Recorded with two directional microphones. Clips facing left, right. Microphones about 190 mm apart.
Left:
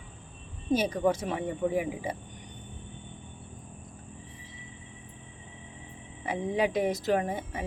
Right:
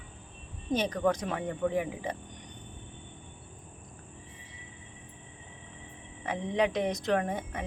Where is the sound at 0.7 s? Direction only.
10° left (ahead or behind).